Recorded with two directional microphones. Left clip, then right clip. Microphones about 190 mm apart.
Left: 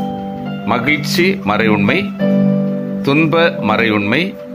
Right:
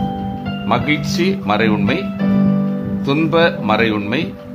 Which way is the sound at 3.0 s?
20° left (ahead or behind).